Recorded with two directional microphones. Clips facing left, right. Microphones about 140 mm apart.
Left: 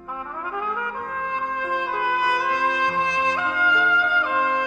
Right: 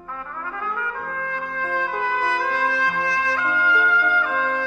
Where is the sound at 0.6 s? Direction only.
15° left (ahead or behind).